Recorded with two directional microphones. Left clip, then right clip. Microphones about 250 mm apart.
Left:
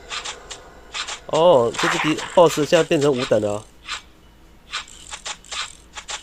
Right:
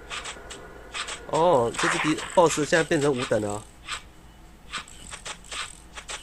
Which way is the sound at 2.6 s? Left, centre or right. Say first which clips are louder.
Left 5 dB; centre.